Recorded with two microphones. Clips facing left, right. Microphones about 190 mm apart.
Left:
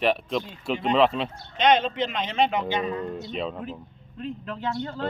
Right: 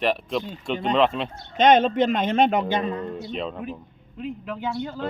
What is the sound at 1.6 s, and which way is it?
A man's voice, 45° right (ahead or behind).